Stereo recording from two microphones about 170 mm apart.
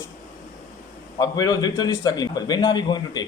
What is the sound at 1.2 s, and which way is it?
A man's voice, 20° left (ahead or behind).